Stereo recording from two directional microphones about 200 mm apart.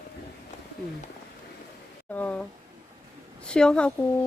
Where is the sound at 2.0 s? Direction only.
10° left (ahead or behind).